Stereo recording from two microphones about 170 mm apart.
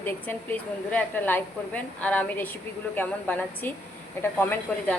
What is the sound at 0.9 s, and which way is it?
A woman's voice, 10° left (ahead or behind).